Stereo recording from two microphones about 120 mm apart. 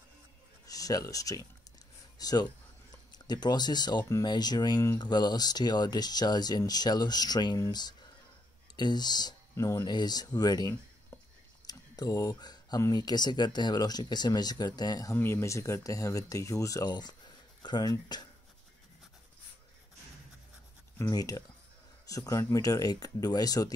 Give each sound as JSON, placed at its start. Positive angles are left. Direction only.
{"t": 0.7, "sound": "speech", "side_deg": 30}
{"t": 11.6, "sound": "a sound", "side_deg": 30}
{"t": 12.8, "sound": "speech", "side_deg": 35}
{"t": 15.1, "sound": "speech", "side_deg": 20}
{"t": 21.1, "sound": "speech", "side_deg": 30}